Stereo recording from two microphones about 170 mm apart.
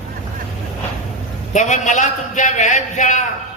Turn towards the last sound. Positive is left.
turn(degrees=45)  # may be behind; listen again after turning